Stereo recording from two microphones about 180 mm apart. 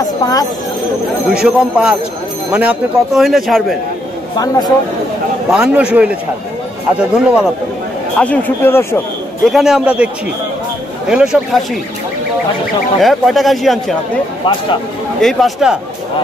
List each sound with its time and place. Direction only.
1.3 s speech: 5° right (ahead or behind)
4.4 s speech: 20° left (ahead or behind)
5.5 s speech: 5° right (ahead or behind)
8.2 s speech: 10° left (ahead or behind)
9.5 s speech: centre (ahead or behind)
11.1 s speech: 5° right (ahead or behind)
13.0 s speech: centre (ahead or behind)
15.1 s speech: centre (ahead or behind)